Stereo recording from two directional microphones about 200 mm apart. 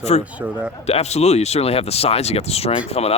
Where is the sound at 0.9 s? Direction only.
30° left (ahead or behind).